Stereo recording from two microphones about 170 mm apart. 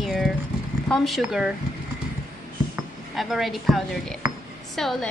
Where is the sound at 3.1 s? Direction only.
Centre (ahead or behind).